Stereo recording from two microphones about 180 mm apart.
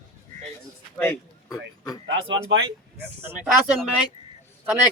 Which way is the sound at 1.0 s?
10° left (ahead or behind).